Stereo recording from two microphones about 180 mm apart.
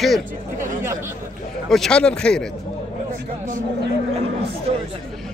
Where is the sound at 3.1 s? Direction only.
45° right (ahead or behind).